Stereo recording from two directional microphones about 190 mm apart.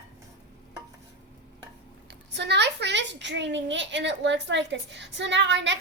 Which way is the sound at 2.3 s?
65° right (ahead or behind).